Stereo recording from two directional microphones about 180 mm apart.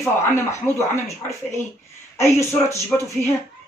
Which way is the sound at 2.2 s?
15° left (ahead or behind).